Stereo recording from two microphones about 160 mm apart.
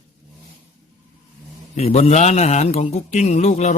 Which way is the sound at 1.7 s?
40° left (ahead or behind).